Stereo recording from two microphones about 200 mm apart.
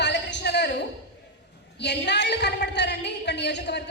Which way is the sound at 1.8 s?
60° left (ahead or behind).